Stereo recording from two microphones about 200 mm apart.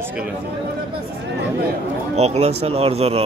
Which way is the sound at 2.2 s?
35° right (ahead or behind).